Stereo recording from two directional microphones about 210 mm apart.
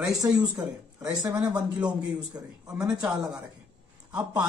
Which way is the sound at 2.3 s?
15° right (ahead or behind).